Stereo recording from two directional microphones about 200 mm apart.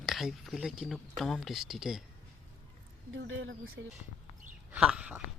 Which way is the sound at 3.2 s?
70° right (ahead or behind).